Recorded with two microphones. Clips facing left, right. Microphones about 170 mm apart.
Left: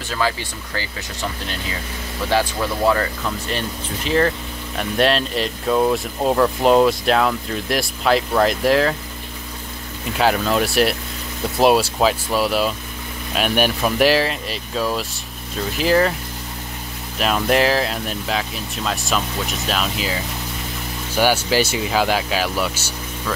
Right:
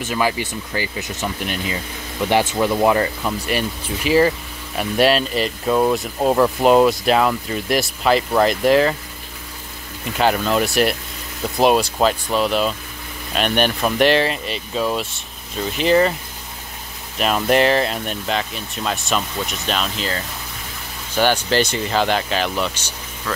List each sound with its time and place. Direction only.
0.0 s speech: 15° right (ahead or behind); by 8.9 s centre (ahead or behind)
10.1 s speech: centre (ahead or behind)
17.2 s speech: centre (ahead or behind)